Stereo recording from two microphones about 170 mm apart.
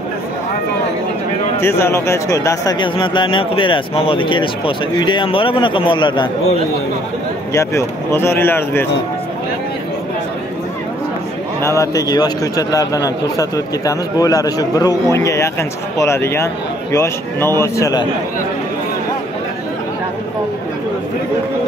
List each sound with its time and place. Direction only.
1.6 s speech: 15° left (ahead or behind)
7.5 s speech: 15° left (ahead or behind)
11.6 s speech: 20° left (ahead or behind)